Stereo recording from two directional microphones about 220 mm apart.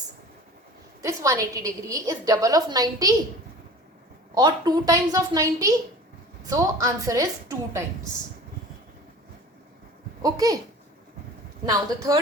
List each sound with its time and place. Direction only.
1.0 s a woman's voice: 15° right (ahead or behind)
4.4 s a woman's voice: 20° right (ahead or behind)
10.2 s a woman's voice: 15° right (ahead or behind)
11.6 s a woman's voice: 15° right (ahead or behind)